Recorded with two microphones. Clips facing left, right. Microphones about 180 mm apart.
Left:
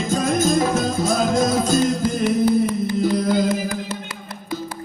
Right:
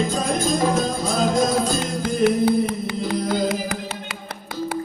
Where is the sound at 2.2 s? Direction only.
65° right (ahead or behind).